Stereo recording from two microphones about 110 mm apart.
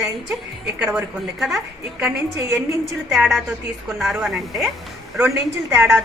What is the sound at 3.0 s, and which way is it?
A woman's voice, 5° right (ahead or behind).